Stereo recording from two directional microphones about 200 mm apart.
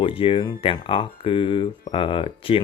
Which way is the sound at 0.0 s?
25° left (ahead or behind).